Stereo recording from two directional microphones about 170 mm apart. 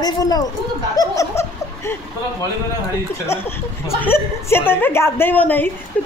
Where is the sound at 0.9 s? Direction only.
20° left (ahead or behind).